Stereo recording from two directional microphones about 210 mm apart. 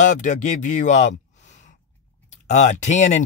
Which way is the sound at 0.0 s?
35° left (ahead or behind).